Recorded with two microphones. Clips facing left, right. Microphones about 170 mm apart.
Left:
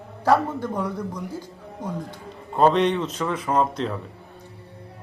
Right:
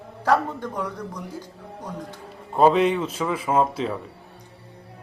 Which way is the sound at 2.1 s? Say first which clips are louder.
Right 1 dB; 5° right (ahead or behind).